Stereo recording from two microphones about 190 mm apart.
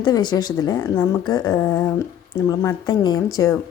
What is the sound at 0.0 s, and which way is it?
Speech, 20° left (ahead or behind).